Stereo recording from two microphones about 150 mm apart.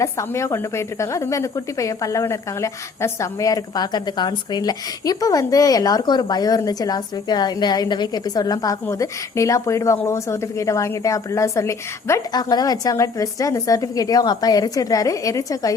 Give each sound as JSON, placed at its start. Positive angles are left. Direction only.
{"t": 0.0, "sound": "a woman's voice", "side_deg": 20}